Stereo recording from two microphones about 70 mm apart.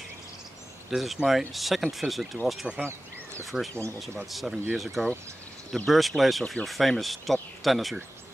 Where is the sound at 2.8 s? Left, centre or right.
Right.